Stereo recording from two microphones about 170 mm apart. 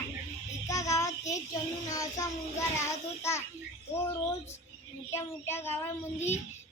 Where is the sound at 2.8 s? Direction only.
15° left (ahead or behind).